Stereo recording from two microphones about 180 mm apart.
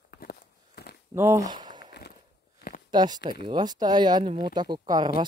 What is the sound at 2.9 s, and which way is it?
Speech, 25° right (ahead or behind).